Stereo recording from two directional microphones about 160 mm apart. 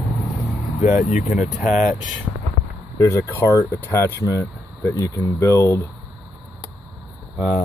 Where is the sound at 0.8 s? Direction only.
50° left (ahead or behind).